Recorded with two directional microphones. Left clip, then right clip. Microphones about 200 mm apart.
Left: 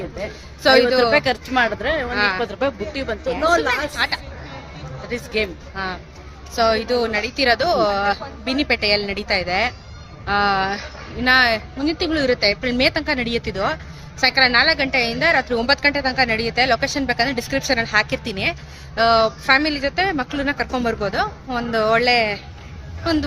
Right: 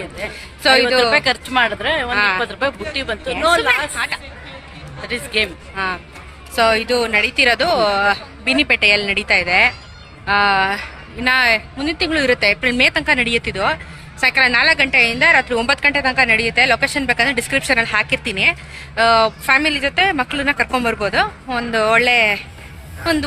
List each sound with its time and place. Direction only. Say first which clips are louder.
0.6 s a woman's voice: right 1 dB; centre (ahead or behind)
1.1 s speech: right 2 dB; 15° left (ahead or behind)
2.0 s speech: right 5 dB; 10° right (ahead or behind)
2.4 s speech: right 2 dB; 10° left (ahead or behind)
3.9 s speech: even; 10° right (ahead or behind)
5.0 s speech: right 4 dB; 15° left (ahead or behind)
5.7 s a woman's voice: right 5 dB; 10° right (ahead or behind)